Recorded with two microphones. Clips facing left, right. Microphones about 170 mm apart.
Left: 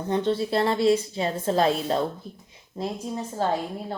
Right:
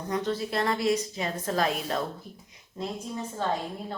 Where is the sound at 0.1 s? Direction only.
30° left (ahead or behind).